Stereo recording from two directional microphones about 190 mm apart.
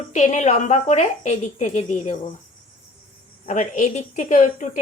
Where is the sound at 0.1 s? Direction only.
40° left (ahead or behind).